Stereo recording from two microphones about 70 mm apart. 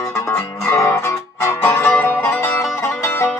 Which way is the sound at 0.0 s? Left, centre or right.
Left.